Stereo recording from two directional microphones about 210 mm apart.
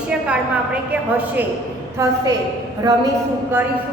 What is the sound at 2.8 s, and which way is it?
Speech, 15° right (ahead or behind).